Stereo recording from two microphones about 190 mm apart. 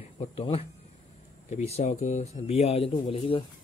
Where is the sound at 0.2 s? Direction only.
30° left (ahead or behind).